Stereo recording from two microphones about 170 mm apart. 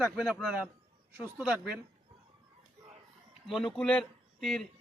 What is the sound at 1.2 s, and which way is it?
Speech, 10° right (ahead or behind).